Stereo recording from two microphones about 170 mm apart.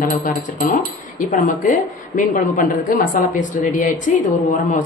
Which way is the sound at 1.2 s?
55° left (ahead or behind).